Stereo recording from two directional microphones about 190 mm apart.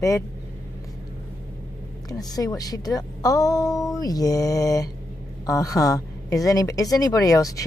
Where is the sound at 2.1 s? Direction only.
20° left (ahead or behind).